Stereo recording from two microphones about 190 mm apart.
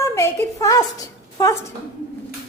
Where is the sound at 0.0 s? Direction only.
15° left (ahead or behind).